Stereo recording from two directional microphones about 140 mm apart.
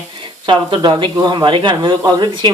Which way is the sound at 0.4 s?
35° right (ahead or behind).